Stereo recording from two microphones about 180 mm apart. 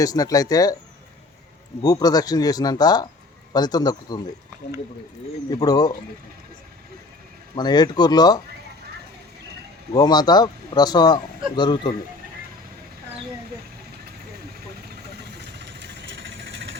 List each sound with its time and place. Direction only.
0.0 s a man's voice: 20° left (ahead or behind)
1.8 s a man's voice: 20° left (ahead or behind)
5.5 s a man's voice: 20° left (ahead or behind)
7.5 s a man's voice: 25° left (ahead or behind)
9.9 s a man's voice: 20° left (ahead or behind)
15.4 s vehicle: 70° right (ahead or behind); by 16.7 s 90° right